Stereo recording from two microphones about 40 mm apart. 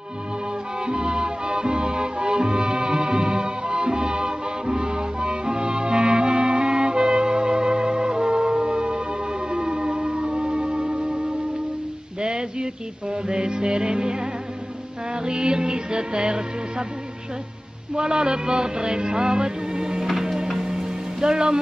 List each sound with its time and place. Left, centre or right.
0.7 s music: right
12.2 s a sound: right
13.1 s music: right
17.9 s music: centre
20.1 s music: centre